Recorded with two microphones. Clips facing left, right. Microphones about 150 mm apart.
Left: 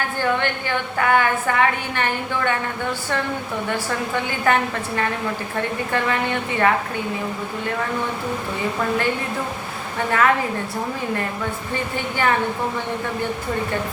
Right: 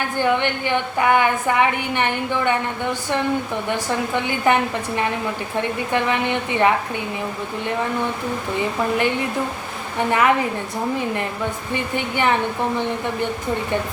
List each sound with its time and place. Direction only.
0.2 s a woman's voice: 20° right (ahead or behind)
3.7 s a woman's voice: 20° right (ahead or behind)
5.9 s a woman's voice: 20° right (ahead or behind)
10.1 s a woman's voice: 15° right (ahead or behind)
11.7 s a woman's voice: 20° right (ahead or behind)